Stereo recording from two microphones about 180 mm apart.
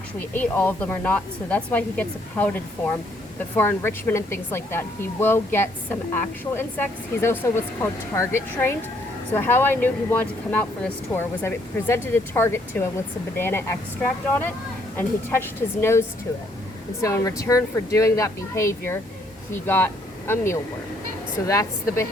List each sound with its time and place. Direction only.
0.2 s speech: 10° left (ahead or behind)
14.9 s speech: 15° left (ahead or behind)